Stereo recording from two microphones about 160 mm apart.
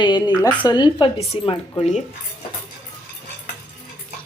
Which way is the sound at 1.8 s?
45° left (ahead or behind).